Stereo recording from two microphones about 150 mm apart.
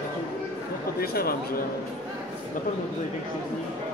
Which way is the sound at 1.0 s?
85° left.